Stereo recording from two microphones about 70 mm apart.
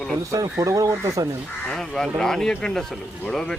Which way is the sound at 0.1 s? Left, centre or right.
Right.